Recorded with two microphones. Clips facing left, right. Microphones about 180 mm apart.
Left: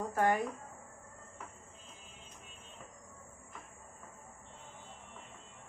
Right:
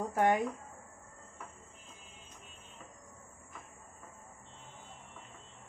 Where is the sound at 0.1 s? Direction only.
20° right (ahead or behind).